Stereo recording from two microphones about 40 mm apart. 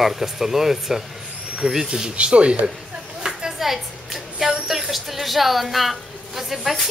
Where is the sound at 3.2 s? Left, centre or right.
Centre.